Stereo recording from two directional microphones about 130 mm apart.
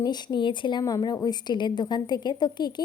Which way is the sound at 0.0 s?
35° left (ahead or behind).